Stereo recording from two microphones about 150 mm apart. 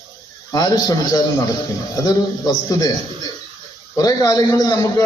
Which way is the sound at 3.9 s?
25° left (ahead or behind).